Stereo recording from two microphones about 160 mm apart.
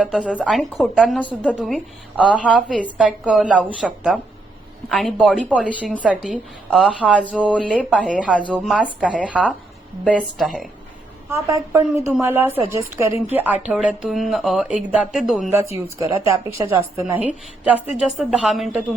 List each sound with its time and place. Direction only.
0.4 s a woman's voice: centre (ahead or behind)
7.3 s a woman's voice: 10° right (ahead or behind)
11.3 s a woman's voice: 20° right (ahead or behind); by 15.4 s centre (ahead or behind)
15.4 s a woman's voice: 15° right (ahead or behind)